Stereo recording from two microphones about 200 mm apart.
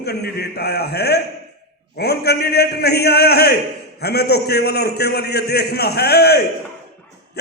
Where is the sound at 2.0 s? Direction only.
55° left (ahead or behind).